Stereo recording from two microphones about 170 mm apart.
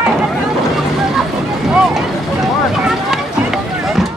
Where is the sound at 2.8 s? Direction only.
Centre (ahead or behind).